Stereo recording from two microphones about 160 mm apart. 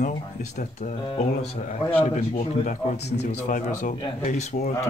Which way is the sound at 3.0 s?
90° left.